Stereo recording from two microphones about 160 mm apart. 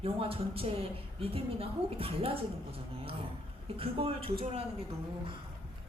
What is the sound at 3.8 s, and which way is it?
Speech, 35° right (ahead or behind).